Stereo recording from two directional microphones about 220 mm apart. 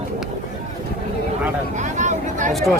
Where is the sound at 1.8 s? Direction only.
35° right (ahead or behind).